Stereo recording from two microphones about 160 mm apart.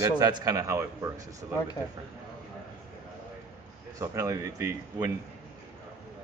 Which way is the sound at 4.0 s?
20° right (ahead or behind).